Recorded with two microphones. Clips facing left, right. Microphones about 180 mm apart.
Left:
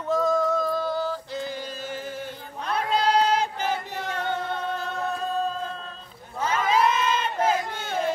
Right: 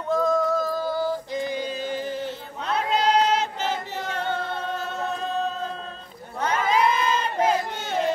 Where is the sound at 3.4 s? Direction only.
15° left (ahead or behind).